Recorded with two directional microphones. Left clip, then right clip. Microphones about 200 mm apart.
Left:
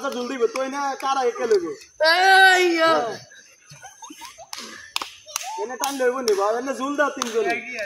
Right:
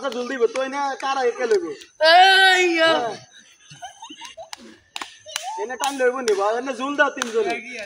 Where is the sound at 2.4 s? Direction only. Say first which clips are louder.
Left 1 dB; 45° right (ahead or behind).